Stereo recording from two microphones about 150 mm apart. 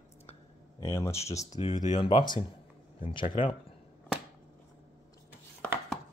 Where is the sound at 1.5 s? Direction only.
55° left (ahead or behind).